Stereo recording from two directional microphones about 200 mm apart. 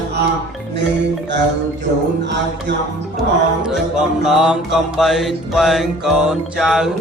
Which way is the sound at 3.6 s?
5° right (ahead or behind).